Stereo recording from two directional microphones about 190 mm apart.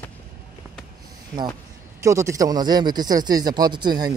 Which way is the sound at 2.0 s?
15° right (ahead or behind).